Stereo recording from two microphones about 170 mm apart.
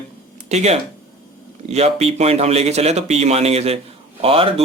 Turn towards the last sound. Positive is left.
turn(degrees=-35)  # may be behind; listen again after turning